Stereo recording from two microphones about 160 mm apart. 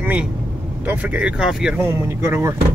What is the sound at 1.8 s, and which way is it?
Speech, 15° right (ahead or behind).